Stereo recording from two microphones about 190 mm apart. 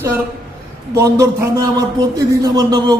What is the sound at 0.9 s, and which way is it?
A man's voice, 15° right (ahead or behind).